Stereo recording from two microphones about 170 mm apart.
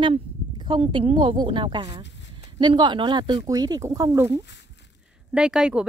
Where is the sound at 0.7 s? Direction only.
30° right (ahead or behind).